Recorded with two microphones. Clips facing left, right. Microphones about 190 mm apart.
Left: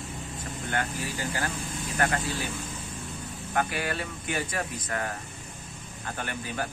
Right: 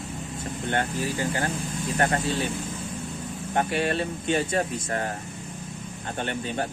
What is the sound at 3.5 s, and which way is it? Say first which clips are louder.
Speech: right 5 dB; 25° right (ahead or behind).